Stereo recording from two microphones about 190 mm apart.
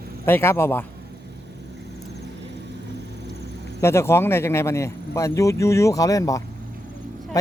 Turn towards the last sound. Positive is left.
turn(degrees=15)  # may be behind; listen again after turning